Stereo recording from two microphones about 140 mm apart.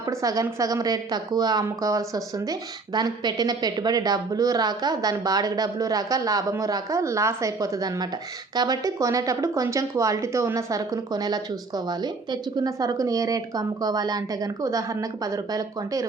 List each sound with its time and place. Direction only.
0.0 s speech: 25° right (ahead or behind)